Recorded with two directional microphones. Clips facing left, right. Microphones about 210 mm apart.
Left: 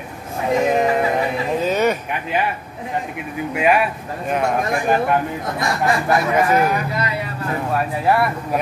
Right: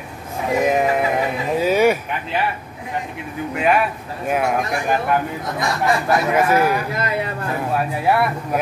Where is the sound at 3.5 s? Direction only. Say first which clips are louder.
Left 1 dB; 5° left (ahead or behind).